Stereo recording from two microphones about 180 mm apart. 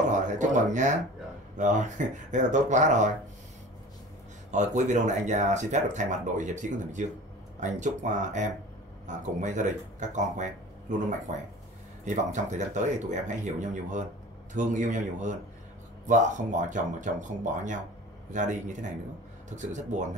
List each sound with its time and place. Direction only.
0.4 s speech: 45° right (ahead or behind)
4.5 s speech: 40° right (ahead or behind)